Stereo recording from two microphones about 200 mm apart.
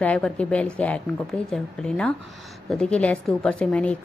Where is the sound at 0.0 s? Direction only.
5° left (ahead or behind).